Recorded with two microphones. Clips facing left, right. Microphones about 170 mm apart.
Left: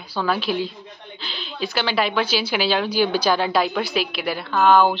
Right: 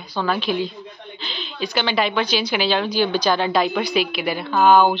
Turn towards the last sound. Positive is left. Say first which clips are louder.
# right 1 dB
turn(degrees=0)  # may be behind; listen again after turning